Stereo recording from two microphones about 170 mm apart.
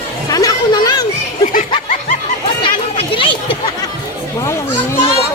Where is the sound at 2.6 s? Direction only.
30° left (ahead or behind).